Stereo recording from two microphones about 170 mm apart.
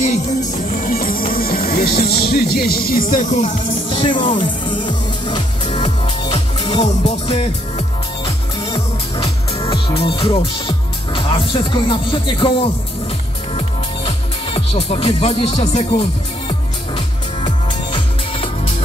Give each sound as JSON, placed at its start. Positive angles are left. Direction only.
{"t": 0.6, "sound": "speech", "side_deg": 55}
{"t": 3.9, "sound": "speech", "side_deg": 30}
{"t": 4.8, "sound": "music", "side_deg": 25}
{"t": 6.8, "sound": "music", "side_deg": 40}
{"t": 8.6, "sound": "music", "side_deg": 25}
{"t": 9.5, "sound": "speech", "side_deg": 35}
{"t": 13.6, "sound": "music", "side_deg": 35}